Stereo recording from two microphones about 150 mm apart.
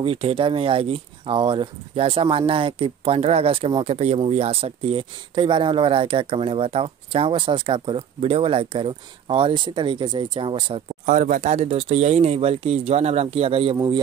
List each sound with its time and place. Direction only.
0.0 s speech: 35° right (ahead or behind)
11.1 s speech: 60° right (ahead or behind); by 13.7 s 40° right (ahead or behind)
13.7 s a man's voice: 25° right (ahead or behind)